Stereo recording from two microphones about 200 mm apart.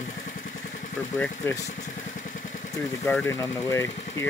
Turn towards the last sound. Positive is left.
turn(degrees=15)  # may be behind; listen again after turning